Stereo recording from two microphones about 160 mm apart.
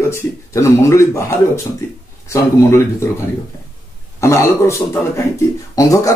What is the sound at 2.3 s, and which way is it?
Speech, 15° left (ahead or behind).